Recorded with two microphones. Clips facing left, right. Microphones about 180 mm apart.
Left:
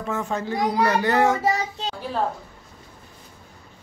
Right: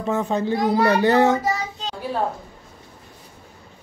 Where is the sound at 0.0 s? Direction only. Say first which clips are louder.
Right 5 dB; 20° right (ahead or behind).